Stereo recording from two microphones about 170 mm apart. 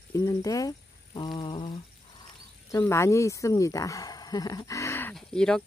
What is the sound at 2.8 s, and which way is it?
Speech, 15° left (ahead or behind).